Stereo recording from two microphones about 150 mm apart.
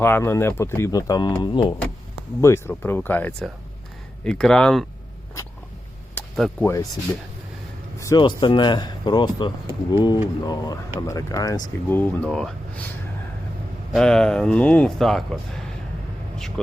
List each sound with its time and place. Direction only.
0.0 s speech: 15° left (ahead or behind); by 1.7 s 35° left (ahead or behind)
2.4 s speech: 15° left (ahead or behind)
6.1 s a sound: 5° left (ahead or behind)
6.7 s speech: 20° left (ahead or behind)
8.2 s speech: 30° left (ahead or behind); by 12.8 s 5° left (ahead or behind)
13.9 s speech: 5° left (ahead or behind)